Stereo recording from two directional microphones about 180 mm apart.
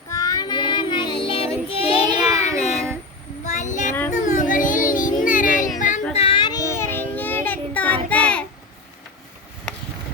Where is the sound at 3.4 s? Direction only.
45° left (ahead or behind).